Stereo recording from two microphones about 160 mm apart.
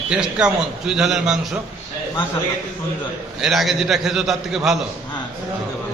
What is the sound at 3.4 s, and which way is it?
A man's voice, centre (ahead or behind).